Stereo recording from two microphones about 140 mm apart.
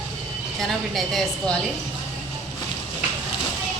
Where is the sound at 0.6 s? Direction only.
Centre (ahead or behind).